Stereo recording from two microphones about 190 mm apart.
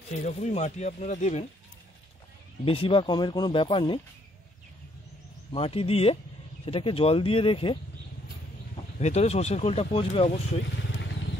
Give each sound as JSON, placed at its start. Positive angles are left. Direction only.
{"t": 0.2, "sound": "speech", "side_deg": 35}
{"t": 2.6, "sound": "speech", "side_deg": 30}
{"t": 5.5, "sound": "speech", "side_deg": 30}
{"t": 9.0, "sound": "speech", "side_deg": 35}